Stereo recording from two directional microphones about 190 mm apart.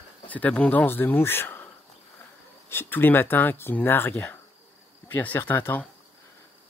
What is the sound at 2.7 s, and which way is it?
Speech, 10° left (ahead or behind).